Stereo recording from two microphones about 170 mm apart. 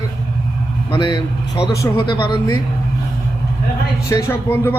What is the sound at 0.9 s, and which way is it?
Speech, 25° left (ahead or behind).